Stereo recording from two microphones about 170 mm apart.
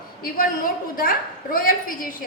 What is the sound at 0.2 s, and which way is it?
A woman's voice, 60° left (ahead or behind).